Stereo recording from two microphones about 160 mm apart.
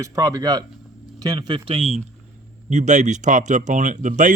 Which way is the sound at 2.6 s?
50° right (ahead or behind).